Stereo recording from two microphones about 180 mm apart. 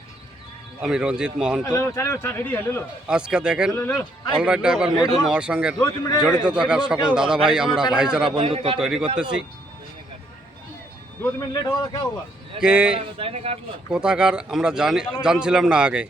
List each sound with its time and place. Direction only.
0.8 s a man's voice: 5° right (ahead or behind)
1.6 s speech: 15° left (ahead or behind)
3.1 s a man's voice: 5° right (ahead or behind)
5.8 s speech: 20° left (ahead or behind)
6.2 s a man's voice: 5° right (ahead or behind)
8.4 s a man's voice: 35° right (ahead or behind)
8.8 s a man's voice: 5° right (ahead or behind)
11.2 s speech: 10° left (ahead or behind)
11.6 s speech: 25° left (ahead or behind)
12.5 s a man's voice: 5° right (ahead or behind)
13.1 s a man's voice: 35° right (ahead or behind)
13.9 s a man's voice: 5° right (ahead or behind)